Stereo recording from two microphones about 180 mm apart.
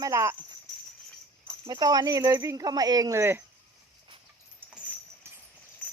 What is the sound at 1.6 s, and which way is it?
Speech, 25° right (ahead or behind).